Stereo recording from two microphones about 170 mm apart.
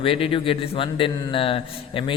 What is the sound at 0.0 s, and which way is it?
A man's voice, 30° left (ahead or behind).